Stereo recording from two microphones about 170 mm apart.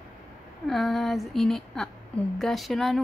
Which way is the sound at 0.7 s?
Centre (ahead or behind).